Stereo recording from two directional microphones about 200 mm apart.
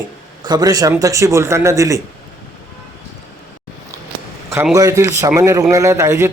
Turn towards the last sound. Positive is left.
turn(degrees=-15)  # may be behind; listen again after turning